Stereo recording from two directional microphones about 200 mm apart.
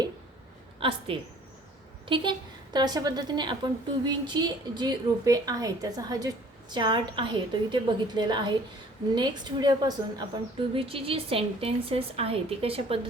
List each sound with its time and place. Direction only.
0.8 s a woman's voice: 25° right (ahead or behind)